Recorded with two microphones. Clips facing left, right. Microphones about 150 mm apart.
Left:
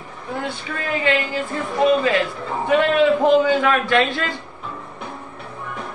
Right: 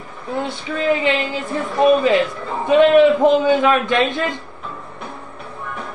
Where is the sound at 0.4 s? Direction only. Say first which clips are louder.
Right 6 dB; 20° right (ahead or behind).